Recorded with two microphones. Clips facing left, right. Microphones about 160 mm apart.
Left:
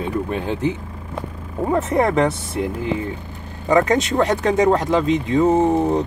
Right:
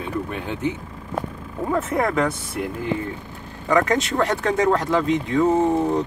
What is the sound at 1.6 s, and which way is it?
Speech, 25° left (ahead or behind).